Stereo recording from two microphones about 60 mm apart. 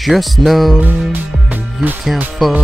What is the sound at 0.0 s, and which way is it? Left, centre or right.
Speech, centre.